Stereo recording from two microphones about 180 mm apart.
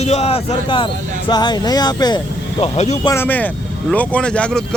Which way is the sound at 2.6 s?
40° left (ahead or behind).